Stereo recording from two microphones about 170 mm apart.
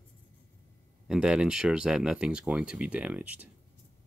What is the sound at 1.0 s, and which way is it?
Speech, 5° right (ahead or behind).